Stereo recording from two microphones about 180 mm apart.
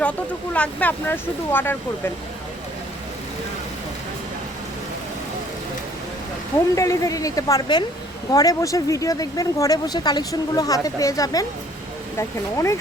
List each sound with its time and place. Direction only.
0.5 s speech: 10° left (ahead or behind)
6.7 s speech: 15° left (ahead or behind)